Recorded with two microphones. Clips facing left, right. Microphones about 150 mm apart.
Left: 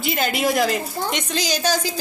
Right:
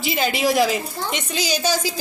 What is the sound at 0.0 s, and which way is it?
A woman's voice, centre (ahead or behind).